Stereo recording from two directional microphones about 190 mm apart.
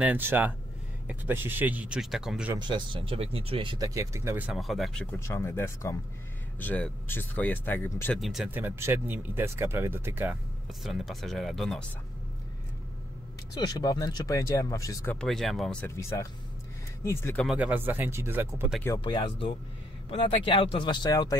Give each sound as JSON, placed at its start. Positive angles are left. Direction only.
{"t": 0.0, "sound": "speech", "side_deg": -10}
{"t": 2.5, "sound": "speech", "side_deg": -25}
{"t": 10.8, "sound": "speech", "side_deg": 0}
{"t": 13.6, "sound": "speech", "side_deg": 20}
{"t": 15.1, "sound": "speech", "side_deg": 0}
{"t": 17.5, "sound": "speech", "side_deg": -5}
{"t": 18.9, "sound": "speech", "side_deg": 25}